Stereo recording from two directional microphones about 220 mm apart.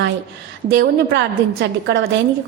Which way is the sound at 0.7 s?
50° right (ahead or behind).